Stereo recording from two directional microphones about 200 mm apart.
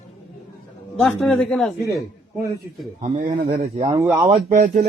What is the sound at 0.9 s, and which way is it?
Speech, centre (ahead or behind).